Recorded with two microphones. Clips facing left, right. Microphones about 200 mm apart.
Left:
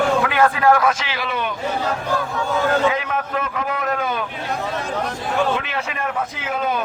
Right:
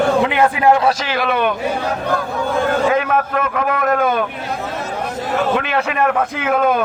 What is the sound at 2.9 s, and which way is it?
A man's voice, 55° right (ahead or behind).